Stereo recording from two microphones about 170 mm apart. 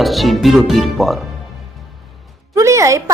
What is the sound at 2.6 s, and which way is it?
Speech, 20° right (ahead or behind).